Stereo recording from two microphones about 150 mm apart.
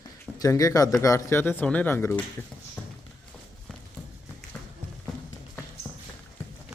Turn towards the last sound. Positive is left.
turn(degrees=15)  # may be behind; listen again after turning